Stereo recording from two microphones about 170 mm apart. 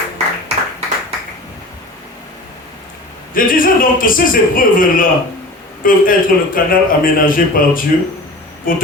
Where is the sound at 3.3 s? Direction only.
55° left (ahead or behind).